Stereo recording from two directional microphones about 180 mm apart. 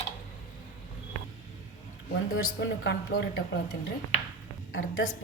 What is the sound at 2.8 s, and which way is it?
Speech, 70° left (ahead or behind).